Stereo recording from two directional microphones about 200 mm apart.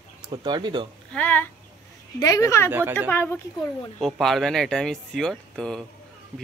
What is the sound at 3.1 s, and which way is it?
Speech, 10° left (ahead or behind).